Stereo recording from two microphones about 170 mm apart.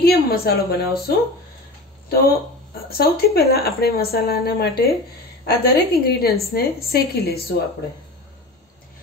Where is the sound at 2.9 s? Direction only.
65° left (ahead or behind).